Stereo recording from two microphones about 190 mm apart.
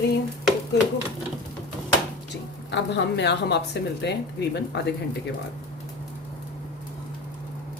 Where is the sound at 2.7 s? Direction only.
65° left (ahead or behind).